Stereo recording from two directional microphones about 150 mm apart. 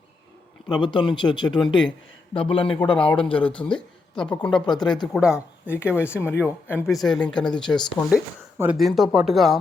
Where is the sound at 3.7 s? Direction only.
30° left (ahead or behind).